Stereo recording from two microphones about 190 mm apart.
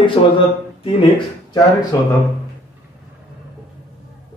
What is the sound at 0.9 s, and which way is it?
Speech, 25° left (ahead or behind).